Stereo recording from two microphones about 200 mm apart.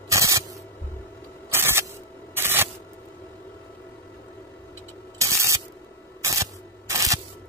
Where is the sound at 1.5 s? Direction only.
10° right (ahead or behind).